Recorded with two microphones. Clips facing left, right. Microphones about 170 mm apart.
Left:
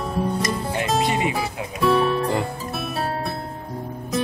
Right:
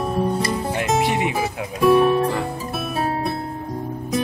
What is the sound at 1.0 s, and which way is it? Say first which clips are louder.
Music: right 1 dB; 65° right (ahead or behind).